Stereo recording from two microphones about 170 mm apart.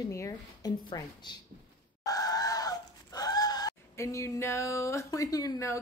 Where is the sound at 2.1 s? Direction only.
20° left (ahead or behind).